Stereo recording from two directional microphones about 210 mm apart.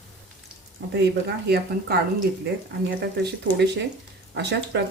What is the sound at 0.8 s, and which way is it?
Speech, 65° right (ahead or behind).